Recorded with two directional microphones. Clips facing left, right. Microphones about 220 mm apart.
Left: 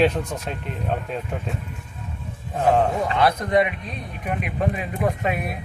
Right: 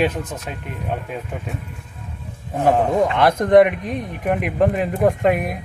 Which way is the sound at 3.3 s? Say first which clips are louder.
Right 8 dB; 50° right (ahead or behind).